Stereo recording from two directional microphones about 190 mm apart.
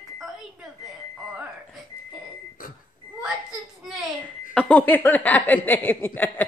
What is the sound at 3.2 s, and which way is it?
Children playing, 5° right (ahead or behind).